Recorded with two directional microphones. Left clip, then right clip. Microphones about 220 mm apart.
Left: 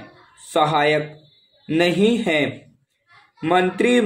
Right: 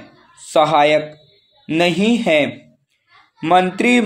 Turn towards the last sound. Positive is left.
turn(degrees=-25)  # may be behind; listen again after turning